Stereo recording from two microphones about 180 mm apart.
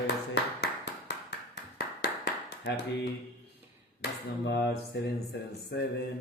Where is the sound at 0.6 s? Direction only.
70° left (ahead or behind).